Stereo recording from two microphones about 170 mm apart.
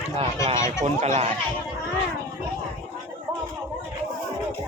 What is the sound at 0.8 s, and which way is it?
Speech, 40° right (ahead or behind).